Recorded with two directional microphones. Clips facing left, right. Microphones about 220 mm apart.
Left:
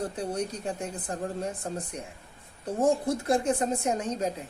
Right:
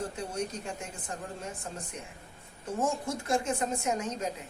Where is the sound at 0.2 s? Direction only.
35° left (ahead or behind).